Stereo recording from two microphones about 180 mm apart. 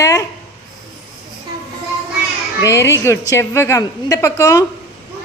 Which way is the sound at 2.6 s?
15° left (ahead or behind).